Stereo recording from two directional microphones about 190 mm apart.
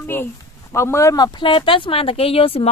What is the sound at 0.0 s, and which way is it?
Speech, 10° left (ahead or behind).